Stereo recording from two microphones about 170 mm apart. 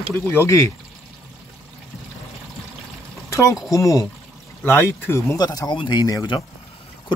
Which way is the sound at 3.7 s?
20° left (ahead or behind).